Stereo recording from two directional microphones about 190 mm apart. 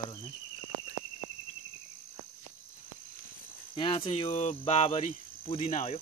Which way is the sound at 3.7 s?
25° left (ahead or behind).